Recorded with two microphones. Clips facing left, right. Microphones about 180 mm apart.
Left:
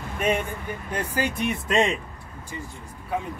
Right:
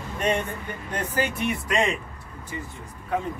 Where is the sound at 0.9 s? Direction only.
10° left (ahead or behind).